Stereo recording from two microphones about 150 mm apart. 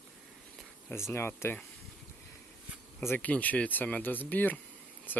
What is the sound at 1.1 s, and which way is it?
Speech, 15° left (ahead or behind).